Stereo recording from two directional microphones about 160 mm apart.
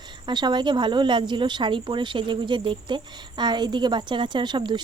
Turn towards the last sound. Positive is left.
turn(degrees=-30)  # may be behind; listen again after turning